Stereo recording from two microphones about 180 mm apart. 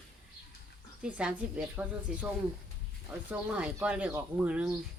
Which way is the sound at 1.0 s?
5° right (ahead or behind).